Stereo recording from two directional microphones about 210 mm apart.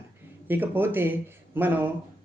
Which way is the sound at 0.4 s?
10° right (ahead or behind).